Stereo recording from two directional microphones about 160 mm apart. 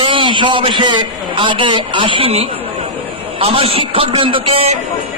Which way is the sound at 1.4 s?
30° right (ahead or behind).